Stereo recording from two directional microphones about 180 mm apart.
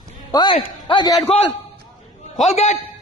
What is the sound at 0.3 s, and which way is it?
Speech, 25° left (ahead or behind).